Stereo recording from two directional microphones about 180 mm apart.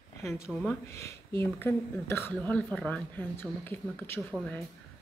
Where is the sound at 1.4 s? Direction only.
15° left (ahead or behind).